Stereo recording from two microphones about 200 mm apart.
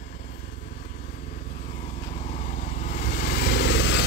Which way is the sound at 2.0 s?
35° left (ahead or behind).